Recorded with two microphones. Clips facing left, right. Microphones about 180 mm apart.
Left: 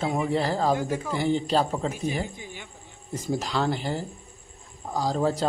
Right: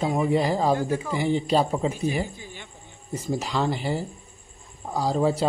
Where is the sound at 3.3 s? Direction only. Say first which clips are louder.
Right 1 dB; 10° right (ahead or behind).